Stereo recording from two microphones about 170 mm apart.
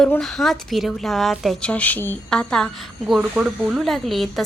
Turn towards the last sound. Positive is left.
turn(degrees=0)  # may be behind; listen again after turning